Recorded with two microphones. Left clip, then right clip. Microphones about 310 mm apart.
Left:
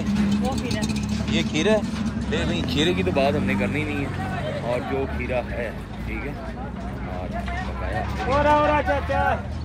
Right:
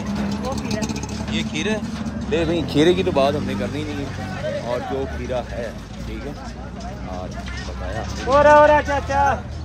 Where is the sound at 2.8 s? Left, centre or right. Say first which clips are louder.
Right 4 dB; right.